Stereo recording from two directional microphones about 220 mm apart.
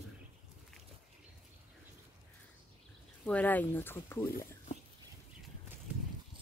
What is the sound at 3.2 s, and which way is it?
Speech, 5° left (ahead or behind).